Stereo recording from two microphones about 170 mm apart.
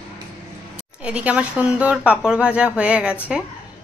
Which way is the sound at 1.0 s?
5° right (ahead or behind).